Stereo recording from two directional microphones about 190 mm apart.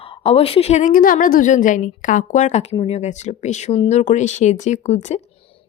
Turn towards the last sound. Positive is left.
turn(degrees=35)  # may be behind; listen again after turning